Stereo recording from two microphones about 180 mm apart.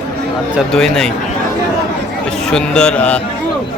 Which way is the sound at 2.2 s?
5° left (ahead or behind).